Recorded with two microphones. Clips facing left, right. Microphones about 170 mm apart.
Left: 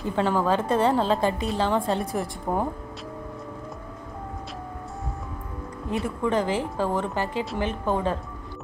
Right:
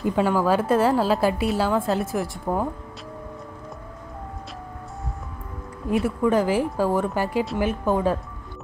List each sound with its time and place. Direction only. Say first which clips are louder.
0.0 s a woman's voice: right 3 dB; 10° right (ahead or behind)
5.9 s a woman's voice: right 5 dB; 10° right (ahead or behind)